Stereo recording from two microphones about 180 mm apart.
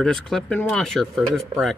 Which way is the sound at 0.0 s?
Centre (ahead or behind).